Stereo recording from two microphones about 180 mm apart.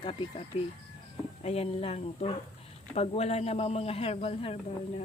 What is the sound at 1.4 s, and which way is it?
Speech, 35° left (ahead or behind).